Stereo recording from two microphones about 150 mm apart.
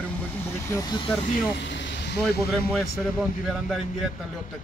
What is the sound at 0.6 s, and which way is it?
Speech, 25° left (ahead or behind).